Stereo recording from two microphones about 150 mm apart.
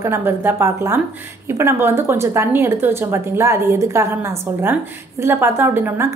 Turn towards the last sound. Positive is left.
turn(degrees=-15)  # may be behind; listen again after turning